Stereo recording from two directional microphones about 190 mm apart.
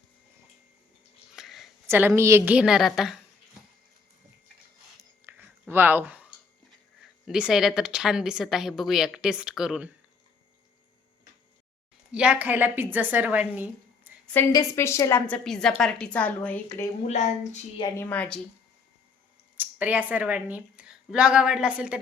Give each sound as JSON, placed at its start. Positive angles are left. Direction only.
{"t": 1.4, "sound": "a sound", "side_deg": 0}
{"t": 1.9, "sound": "a woman's voice", "side_deg": -10}
{"t": 5.2, "sound": "a sound", "side_deg": -10}
{"t": 6.7, "sound": "speech", "side_deg": 0}
{"t": 12.1, "sound": "a woman's voice", "side_deg": -5}
{"t": 14.3, "sound": "a woman's voice", "side_deg": 15}
{"t": 15.4, "sound": "speech", "side_deg": 5}
{"t": 17.1, "sound": "a woman's voice", "side_deg": 40}
{"t": 17.9, "sound": "a woman's voice", "side_deg": 10}
{"t": 19.5, "sound": "speech", "side_deg": -10}